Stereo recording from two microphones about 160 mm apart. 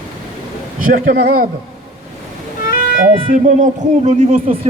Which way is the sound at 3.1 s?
50° right (ahead or behind).